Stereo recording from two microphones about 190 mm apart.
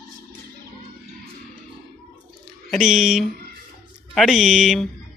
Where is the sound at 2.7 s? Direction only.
Centre (ahead or behind).